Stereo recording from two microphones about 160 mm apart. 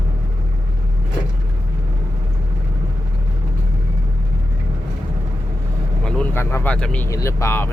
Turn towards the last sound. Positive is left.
turn(degrees=15)  # may be behind; listen again after turning